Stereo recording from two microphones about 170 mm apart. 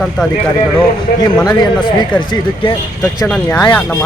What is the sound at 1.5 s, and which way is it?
Speech, 25° left (ahead or behind).